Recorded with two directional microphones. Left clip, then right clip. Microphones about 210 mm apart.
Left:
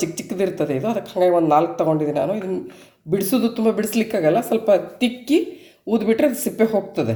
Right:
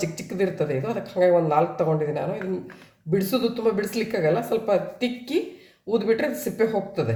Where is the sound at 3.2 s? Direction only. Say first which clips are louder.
Left 3 dB; 35° left (ahead or behind).